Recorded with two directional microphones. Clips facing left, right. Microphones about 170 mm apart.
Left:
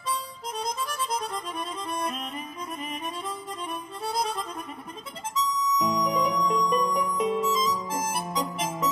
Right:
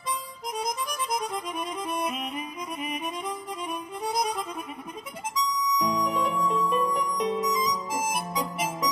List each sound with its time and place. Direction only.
0.6 s music: 15° right (ahead or behind)
2.0 s music: centre (ahead or behind)
4.0 s music: 15° right (ahead or behind)
5.5 s harmonica: 15° right (ahead or behind)
5.9 s music: 5° right (ahead or behind)
7.5 s music: 15° right (ahead or behind)